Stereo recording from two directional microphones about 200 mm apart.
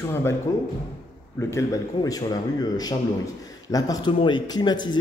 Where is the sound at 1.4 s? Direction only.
15° left (ahead or behind).